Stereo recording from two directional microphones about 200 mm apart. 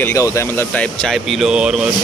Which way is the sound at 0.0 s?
15° left (ahead or behind).